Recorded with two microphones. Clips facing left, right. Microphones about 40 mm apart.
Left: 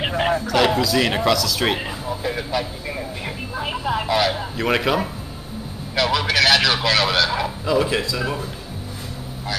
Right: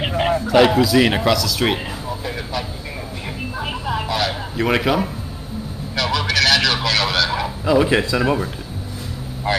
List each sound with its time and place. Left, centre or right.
0.0 s a sound: centre
0.5 s speech: centre
8.0 s speech: right
9.5 s speech: right